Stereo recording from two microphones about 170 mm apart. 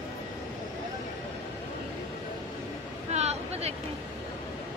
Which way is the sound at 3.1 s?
40° right (ahead or behind).